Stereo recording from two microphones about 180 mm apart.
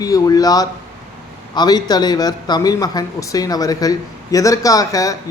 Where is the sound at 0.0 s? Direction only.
20° left (ahead or behind).